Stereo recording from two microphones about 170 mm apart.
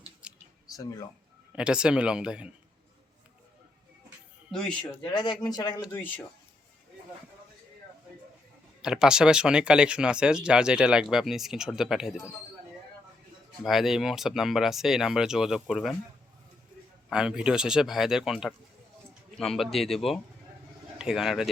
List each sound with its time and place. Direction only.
0.2 s a sound: 5° right (ahead or behind)
0.8 s speech: 20° left (ahead or behind)
1.5 s speech: 5° right (ahead or behind)
4.5 s speech: 5° left (ahead or behind)
5.2 s speech: 25° left (ahead or behind)
5.9 s speech: 10° left (ahead or behind)
8.8 s speech: 5° right (ahead or behind)
13.7 s speech: centre (ahead or behind)
17.1 s speech: 5° right (ahead or behind)